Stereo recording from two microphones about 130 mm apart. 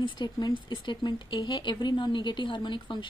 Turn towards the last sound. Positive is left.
turn(degrees=35)  # may be behind; listen again after turning